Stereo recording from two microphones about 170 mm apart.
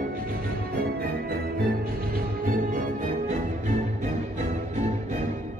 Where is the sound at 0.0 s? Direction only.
60° right (ahead or behind); by 5.2 s 40° right (ahead or behind).